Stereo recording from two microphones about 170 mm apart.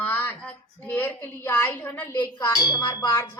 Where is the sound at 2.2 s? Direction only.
20° left (ahead or behind).